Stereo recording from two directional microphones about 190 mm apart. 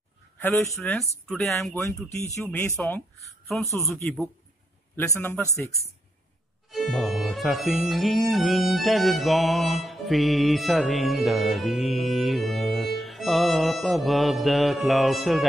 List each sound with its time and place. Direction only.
0.4 s speech: 10° left (ahead or behind)
1.2 s music: centre (ahead or behind)
2.4 s speech: 10° left (ahead or behind)
3.8 s music: 5° left (ahead or behind)
4.9 s speech: 15° left (ahead or behind)
6.7 s music: centre (ahead or behind)